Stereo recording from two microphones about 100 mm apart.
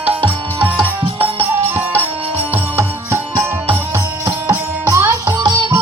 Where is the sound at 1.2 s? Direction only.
90° right.